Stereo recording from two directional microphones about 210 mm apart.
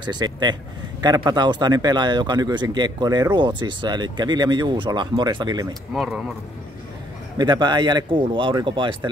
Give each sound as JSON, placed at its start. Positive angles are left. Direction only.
{"t": 0.0, "sound": "a man's voice", "side_deg": -20}
{"t": 5.9, "sound": "speech", "side_deg": 0}
{"t": 7.3, "sound": "a man's voice", "side_deg": -20}